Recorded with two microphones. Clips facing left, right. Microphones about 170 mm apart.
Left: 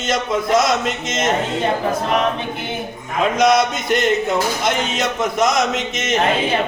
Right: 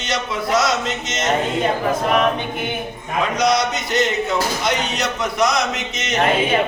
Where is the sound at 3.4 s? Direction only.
50° left (ahead or behind).